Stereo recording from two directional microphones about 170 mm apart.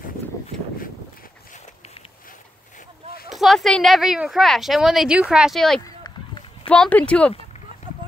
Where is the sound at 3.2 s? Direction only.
Centre (ahead or behind).